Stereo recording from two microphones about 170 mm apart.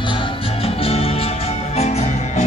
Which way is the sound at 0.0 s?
30° left (ahead or behind).